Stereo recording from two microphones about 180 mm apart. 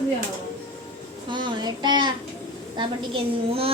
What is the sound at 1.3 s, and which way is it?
A woman's voice, 25° right (ahead or behind).